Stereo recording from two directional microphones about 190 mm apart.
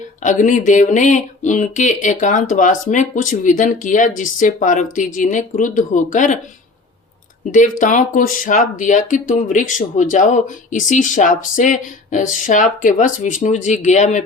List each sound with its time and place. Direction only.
0.2 s speech: 40° left (ahead or behind)
7.5 s speech: 40° left (ahead or behind)